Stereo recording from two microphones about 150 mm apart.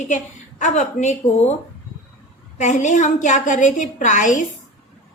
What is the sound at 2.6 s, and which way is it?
A woman's voice, 55° left (ahead or behind).